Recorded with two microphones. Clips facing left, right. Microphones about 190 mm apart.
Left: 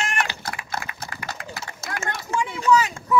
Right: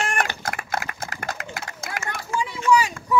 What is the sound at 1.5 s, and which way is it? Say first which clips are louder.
Run: even; 50° right (ahead or behind).